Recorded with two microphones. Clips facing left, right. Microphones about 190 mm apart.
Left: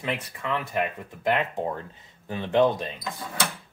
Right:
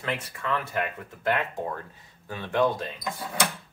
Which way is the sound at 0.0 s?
15° left (ahead or behind).